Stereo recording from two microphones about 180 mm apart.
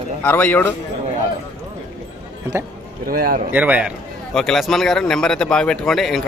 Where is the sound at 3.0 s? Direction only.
55° right (ahead or behind).